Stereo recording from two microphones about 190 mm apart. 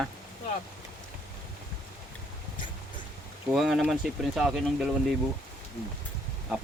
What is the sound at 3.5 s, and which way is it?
Speech, centre (ahead or behind).